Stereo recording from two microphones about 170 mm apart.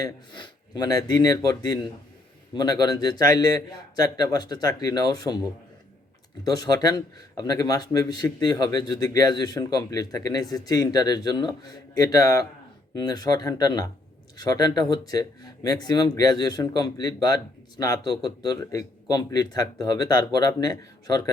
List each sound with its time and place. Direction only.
0.0 s speech: 25° left (ahead or behind)
6.4 s speech: 20° left (ahead or behind)